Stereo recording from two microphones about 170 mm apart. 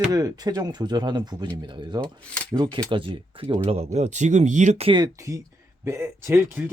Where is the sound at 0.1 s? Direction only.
20° right (ahead or behind); by 4.9 s 45° right (ahead or behind).